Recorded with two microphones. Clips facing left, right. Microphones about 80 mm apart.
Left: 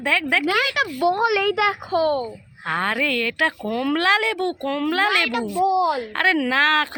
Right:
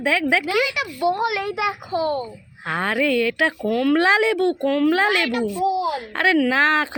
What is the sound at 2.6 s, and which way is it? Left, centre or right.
Speech, centre.